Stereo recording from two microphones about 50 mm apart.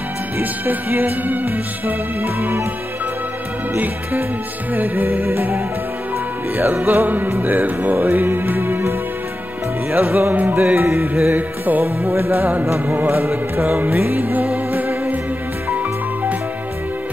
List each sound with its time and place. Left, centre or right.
0.4 s music: right
3.7 s music: right
6.5 s music: right
9.9 s music: right